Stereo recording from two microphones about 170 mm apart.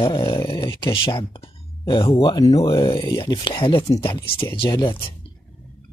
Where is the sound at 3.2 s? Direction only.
20° left (ahead or behind).